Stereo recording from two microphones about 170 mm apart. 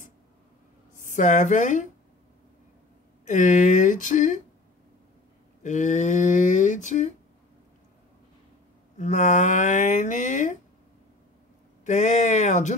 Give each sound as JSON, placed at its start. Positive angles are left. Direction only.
{"t": 0.9, "sound": "speech", "side_deg": 50}
{"t": 3.3, "sound": "speech", "side_deg": 45}
{"t": 5.6, "sound": "speech", "side_deg": 45}
{"t": 8.9, "sound": "speech", "side_deg": 45}
{"t": 11.8, "sound": "speech", "side_deg": 45}